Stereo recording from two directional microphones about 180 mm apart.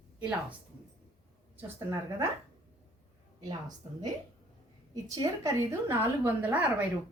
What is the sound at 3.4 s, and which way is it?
A woman's voice, 20° right (ahead or behind).